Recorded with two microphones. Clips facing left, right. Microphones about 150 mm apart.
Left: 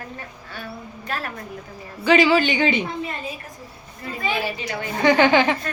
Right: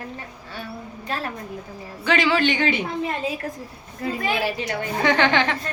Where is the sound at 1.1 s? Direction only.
25° right (ahead or behind).